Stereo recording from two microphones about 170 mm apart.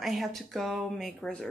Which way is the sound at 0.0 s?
Centre (ahead or behind).